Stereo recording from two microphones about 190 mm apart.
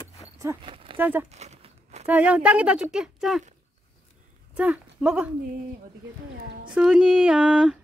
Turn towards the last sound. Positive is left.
turn(degrees=-5)  # may be behind; listen again after turning